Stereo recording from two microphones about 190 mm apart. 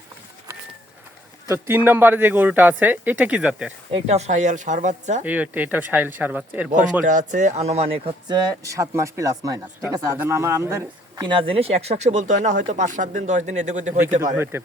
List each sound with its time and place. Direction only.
1.5 s speech: 15° right (ahead or behind)
3.9 s speech: 35° right (ahead or behind)
5.2 s speech: 10° right (ahead or behind)
6.7 s speech: 40° right (ahead or behind)
14.3 s speech: 10° right (ahead or behind)